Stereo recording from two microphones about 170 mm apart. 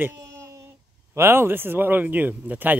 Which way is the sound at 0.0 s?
15° right (ahead or behind).